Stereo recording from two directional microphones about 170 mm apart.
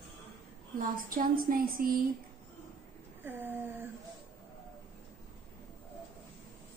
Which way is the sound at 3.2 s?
10° right (ahead or behind).